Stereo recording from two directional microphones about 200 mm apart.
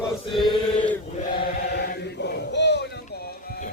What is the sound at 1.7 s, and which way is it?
Chant, 55° left (ahead or behind).